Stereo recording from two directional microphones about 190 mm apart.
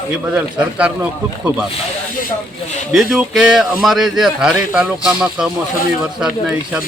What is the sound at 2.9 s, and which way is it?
Speech, 5° right (ahead or behind).